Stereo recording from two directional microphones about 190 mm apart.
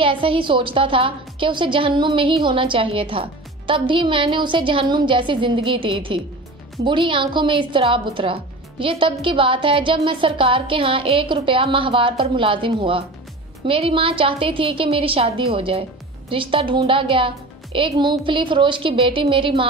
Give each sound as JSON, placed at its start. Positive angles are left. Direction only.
{"t": 0.0, "sound": "a woman's voice", "side_deg": -25}